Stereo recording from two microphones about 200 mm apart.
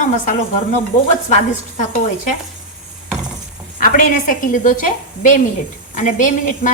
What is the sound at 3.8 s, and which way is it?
A woman's voice, 40° left (ahead or behind).